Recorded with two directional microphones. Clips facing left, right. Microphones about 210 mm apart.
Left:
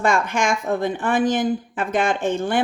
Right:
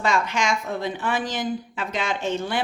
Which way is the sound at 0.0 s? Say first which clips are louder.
Left 3 dB; 50° left (ahead or behind).